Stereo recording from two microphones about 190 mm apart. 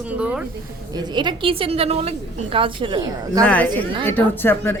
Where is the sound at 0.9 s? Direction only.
20° right (ahead or behind).